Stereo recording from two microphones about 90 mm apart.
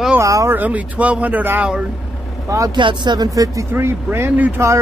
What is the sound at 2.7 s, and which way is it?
Speech, 55° right (ahead or behind).